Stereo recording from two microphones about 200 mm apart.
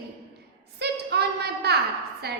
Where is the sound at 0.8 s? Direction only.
55° right (ahead or behind).